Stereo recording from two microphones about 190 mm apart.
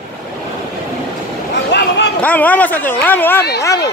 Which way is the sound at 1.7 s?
65° left (ahead or behind).